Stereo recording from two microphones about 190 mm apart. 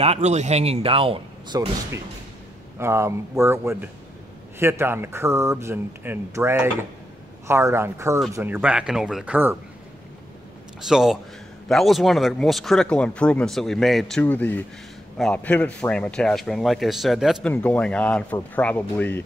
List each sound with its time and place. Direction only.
0.0 s speech: 35° right (ahead or behind)
2.8 s speech: 15° right (ahead or behind)
10.8 s speech: centre (ahead or behind)